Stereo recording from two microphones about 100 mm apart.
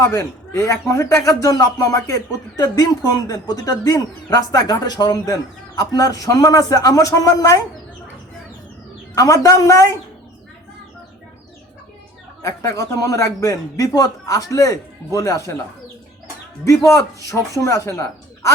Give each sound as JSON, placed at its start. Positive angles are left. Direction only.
{"t": 0.0, "sound": "a man's voice", "side_deg": 25}
{"t": 9.1, "sound": "a man's voice", "side_deg": 35}
{"t": 12.4, "sound": "a man's voice", "side_deg": 35}
{"t": 16.6, "sound": "a man's voice", "side_deg": 30}